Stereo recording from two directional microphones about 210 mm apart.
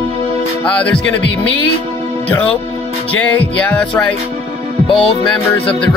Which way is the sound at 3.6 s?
5° left (ahead or behind).